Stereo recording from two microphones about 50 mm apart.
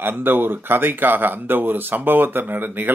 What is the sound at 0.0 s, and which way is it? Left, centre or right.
Speech, right.